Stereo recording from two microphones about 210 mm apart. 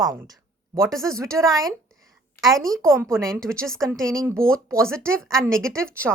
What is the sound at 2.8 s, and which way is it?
Speech, 15° right (ahead or behind).